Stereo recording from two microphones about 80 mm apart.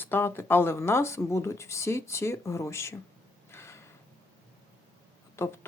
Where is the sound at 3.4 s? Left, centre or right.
Left.